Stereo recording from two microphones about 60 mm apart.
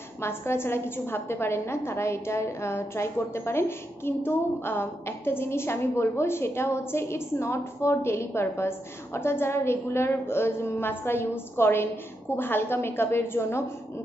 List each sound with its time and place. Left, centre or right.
0.2 s a woman's voice: left